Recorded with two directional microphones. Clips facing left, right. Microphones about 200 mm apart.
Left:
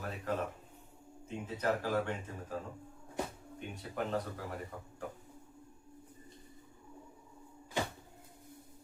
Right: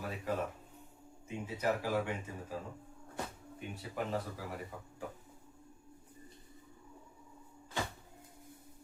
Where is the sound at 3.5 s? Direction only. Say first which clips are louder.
Left 1 dB; 5° right (ahead or behind).